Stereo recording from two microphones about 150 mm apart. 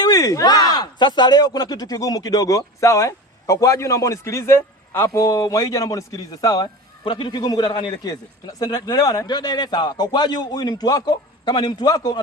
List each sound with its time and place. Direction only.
0.0 s speech: 25° left (ahead or behind)